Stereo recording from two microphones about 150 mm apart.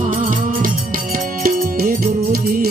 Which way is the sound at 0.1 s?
65° right (ahead or behind).